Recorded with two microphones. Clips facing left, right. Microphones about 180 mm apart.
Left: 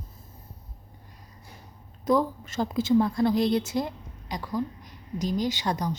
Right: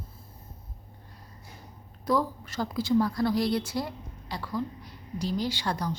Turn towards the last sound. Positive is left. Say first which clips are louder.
# left 2 dB
turn(degrees=20)  # may be behind; listen again after turning